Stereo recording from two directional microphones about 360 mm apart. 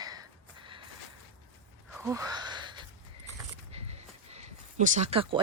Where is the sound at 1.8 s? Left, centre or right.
Centre.